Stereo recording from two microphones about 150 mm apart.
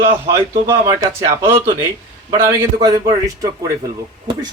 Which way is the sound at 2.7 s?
25° right (ahead or behind).